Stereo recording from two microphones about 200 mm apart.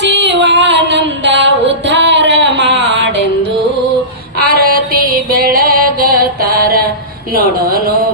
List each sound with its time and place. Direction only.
0.0 s music: 60° right (ahead or behind)
4.4 s music: 45° right (ahead or behind)